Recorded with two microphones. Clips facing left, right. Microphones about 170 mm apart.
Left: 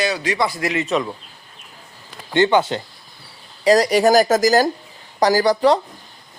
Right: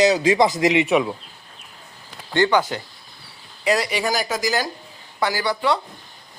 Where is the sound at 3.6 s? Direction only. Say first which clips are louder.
Left 7 dB; 40° left (ahead or behind).